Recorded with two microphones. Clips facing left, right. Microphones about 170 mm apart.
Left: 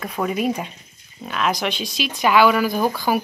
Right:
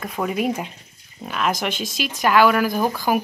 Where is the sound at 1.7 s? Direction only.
45° right (ahead or behind).